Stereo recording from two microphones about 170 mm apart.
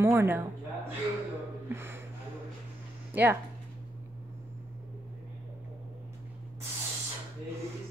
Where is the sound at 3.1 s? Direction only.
10° right (ahead or behind).